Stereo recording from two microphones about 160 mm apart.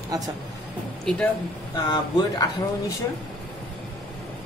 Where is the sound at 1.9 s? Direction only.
25° left (ahead or behind).